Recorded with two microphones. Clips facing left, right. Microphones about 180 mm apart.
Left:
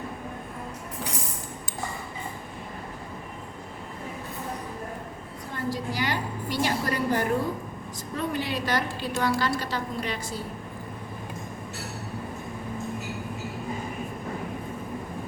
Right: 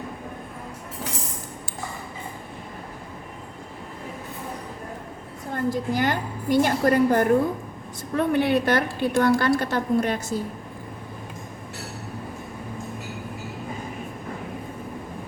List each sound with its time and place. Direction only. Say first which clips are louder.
5.5 s a woman's voice: right 6 dB; 50° right (ahead or behind)